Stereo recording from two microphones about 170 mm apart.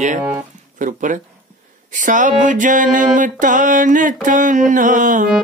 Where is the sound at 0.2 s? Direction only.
15° right (ahead or behind).